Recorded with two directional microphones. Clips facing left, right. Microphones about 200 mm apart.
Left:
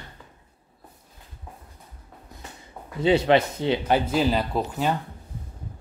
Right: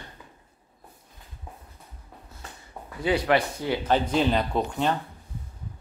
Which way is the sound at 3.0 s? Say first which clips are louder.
Left 4 dB; 25° left (ahead or behind).